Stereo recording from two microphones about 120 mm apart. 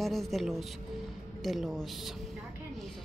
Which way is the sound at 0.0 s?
Centre (ahead or behind).